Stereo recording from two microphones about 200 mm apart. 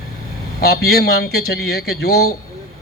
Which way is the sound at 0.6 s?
50° left (ahead or behind).